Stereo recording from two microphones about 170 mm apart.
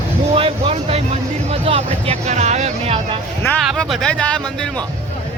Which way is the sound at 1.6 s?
35° right (ahead or behind).